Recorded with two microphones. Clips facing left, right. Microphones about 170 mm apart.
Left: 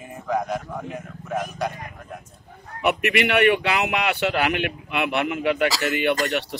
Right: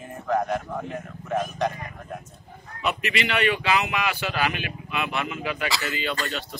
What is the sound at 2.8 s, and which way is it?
Speech, 60° left (ahead or behind).